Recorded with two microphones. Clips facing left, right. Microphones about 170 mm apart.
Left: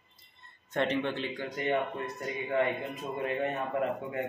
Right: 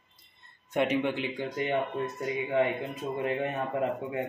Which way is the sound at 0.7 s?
10° right (ahead or behind).